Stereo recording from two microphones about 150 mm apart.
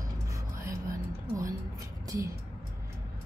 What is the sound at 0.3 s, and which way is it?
Music, 20° right (ahead or behind).